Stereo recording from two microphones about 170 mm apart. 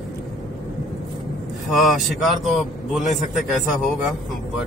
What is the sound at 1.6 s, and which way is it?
A man's voice, centre (ahead or behind).